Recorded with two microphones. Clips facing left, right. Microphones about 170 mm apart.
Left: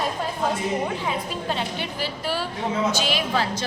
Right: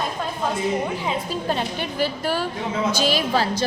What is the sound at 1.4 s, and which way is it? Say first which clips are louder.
A woman's voice: right 3 dB; 45° right (ahead or behind).